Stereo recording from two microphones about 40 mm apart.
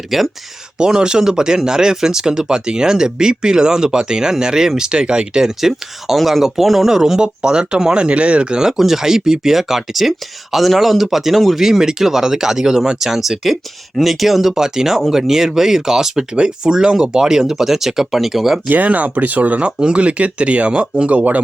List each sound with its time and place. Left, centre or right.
0.1 s speech: centre
0.8 s speech: centre
5.5 s speech: centre; by 8.7 s right
8.7 s speech: centre
16.3 s speech: right; by 18.6 s centre
18.7 s speech: right
19.8 s speech: right